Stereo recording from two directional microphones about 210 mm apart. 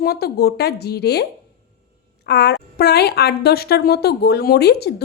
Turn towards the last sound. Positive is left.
turn(degrees=50)  # may be behind; listen again after turning